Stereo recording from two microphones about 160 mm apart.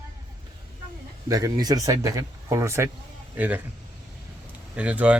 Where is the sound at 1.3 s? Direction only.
20° right (ahead or behind).